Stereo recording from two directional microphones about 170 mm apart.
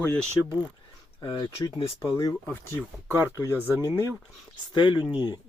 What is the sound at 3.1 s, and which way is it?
Speech, 10° right (ahead or behind).